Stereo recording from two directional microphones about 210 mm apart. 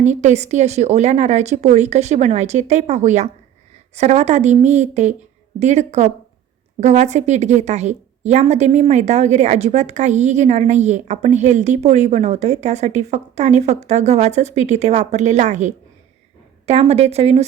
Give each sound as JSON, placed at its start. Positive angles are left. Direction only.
{"t": 0.0, "sound": "a woman's voice", "side_deg": -35}